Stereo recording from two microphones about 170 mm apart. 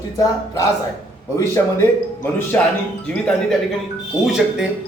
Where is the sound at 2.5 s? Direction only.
15° left (ahead or behind).